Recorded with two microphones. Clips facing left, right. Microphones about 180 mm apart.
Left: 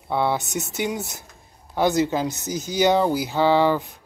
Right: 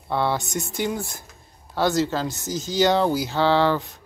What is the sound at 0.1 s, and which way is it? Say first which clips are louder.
Speech: left 1 dB; 10° left (ahead or behind).